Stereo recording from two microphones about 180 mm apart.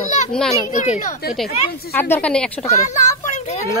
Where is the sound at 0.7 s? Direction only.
40° left (ahead or behind).